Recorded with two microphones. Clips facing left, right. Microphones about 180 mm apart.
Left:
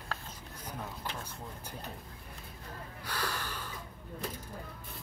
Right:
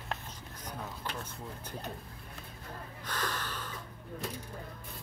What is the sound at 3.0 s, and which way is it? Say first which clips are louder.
Snort: even; 10° left (ahead or behind).